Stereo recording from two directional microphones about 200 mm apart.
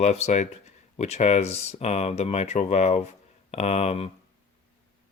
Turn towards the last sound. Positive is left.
turn(degrees=30)  # may be behind; listen again after turning